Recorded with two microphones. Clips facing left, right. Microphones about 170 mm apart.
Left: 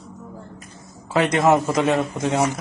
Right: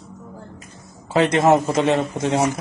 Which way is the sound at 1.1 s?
30° right (ahead or behind).